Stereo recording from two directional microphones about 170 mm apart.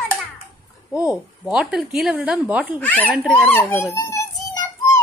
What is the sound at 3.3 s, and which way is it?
Speech, 10° left (ahead or behind).